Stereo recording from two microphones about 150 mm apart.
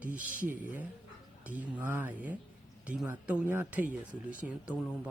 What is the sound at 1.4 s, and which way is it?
Speech, 10° right (ahead or behind).